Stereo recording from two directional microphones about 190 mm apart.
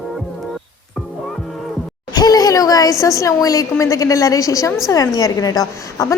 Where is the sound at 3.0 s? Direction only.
15° left (ahead or behind).